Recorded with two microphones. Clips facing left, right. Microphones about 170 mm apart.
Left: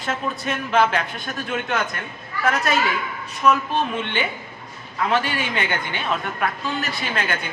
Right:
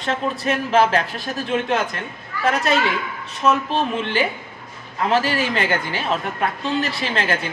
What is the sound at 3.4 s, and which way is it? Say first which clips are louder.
Speech: even; 25° right (ahead or behind).